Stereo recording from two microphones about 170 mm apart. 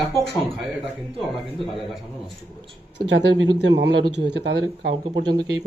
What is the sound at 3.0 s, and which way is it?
Speech, 90° right.